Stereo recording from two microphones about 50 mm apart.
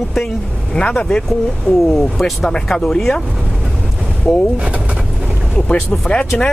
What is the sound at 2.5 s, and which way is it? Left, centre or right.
Speech, centre.